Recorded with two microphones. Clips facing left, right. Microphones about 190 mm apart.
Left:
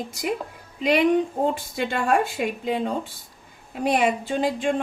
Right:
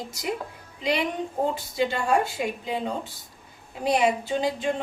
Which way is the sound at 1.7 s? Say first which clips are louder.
Left 1 dB; 55° left (ahead or behind).